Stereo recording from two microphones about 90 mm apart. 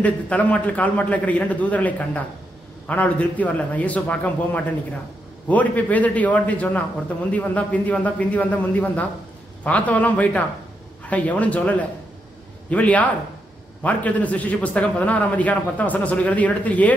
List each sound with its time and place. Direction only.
0.0 s a man's voice: 15° left (ahead or behind)